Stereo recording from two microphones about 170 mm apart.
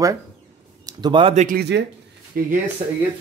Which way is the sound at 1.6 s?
90° right.